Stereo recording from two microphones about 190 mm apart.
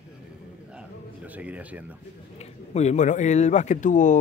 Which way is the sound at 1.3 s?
10° right (ahead or behind).